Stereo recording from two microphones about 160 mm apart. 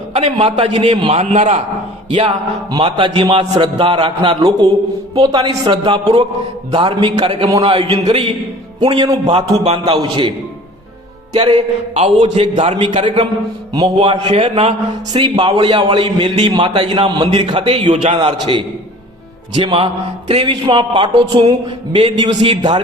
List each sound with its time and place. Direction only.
0.1 s a man's voice: 40° right (ahead or behind)
2.0 s a man's voice: 35° right (ahead or behind)
11.3 s a man's voice: 40° right (ahead or behind)
13.7 s a man's voice: 30° right (ahead or behind)
15.1 s a man's voice: 25° right (ahead or behind); by 18.3 s 40° right (ahead or behind)
19.6 s a man's voice: 35° right (ahead or behind)